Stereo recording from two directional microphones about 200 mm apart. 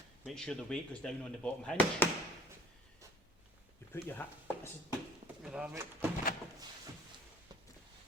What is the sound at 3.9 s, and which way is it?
Speech, 10° left (ahead or behind).